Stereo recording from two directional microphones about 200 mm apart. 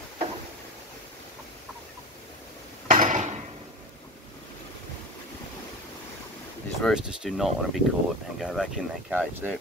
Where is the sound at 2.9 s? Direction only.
35° right (ahead or behind).